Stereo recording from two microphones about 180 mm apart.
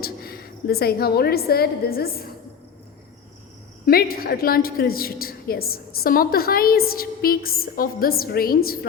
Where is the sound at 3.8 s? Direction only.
55° left (ahead or behind).